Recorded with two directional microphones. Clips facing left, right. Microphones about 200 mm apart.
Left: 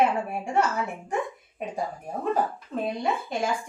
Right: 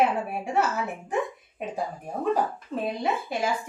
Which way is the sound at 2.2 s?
Centre (ahead or behind).